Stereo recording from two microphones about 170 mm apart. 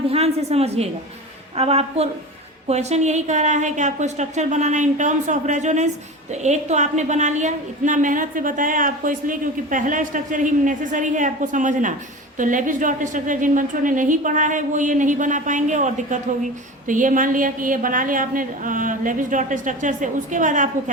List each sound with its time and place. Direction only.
0.1 s a woman's voice: 35° right (ahead or behind)